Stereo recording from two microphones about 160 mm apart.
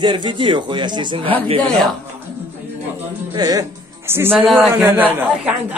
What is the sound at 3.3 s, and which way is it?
A man's voice, 25° right (ahead or behind).